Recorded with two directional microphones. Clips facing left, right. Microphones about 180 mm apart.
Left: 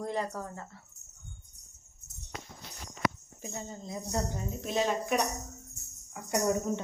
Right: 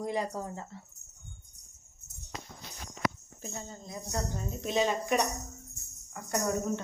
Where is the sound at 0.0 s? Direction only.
15° right (ahead or behind).